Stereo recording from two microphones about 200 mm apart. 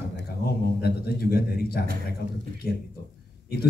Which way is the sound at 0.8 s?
50° left (ahead or behind).